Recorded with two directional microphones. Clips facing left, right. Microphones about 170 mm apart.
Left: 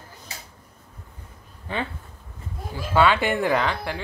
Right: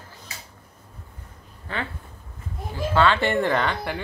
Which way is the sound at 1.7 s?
15° left (ahead or behind).